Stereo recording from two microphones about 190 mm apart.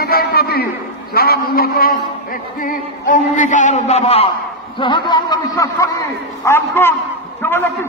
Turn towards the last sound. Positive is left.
turn(degrees=10)  # may be behind; listen again after turning